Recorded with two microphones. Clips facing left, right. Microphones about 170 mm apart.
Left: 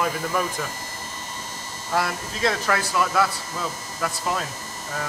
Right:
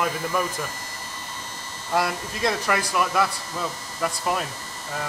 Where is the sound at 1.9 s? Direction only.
15° right (ahead or behind).